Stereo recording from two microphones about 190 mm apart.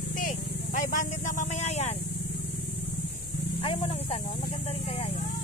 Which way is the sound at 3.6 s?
30° left (ahead or behind).